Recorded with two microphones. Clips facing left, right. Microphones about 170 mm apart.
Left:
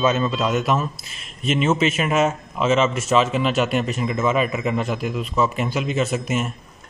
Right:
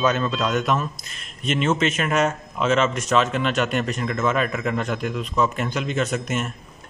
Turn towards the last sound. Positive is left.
turn(degrees=5)  # may be behind; listen again after turning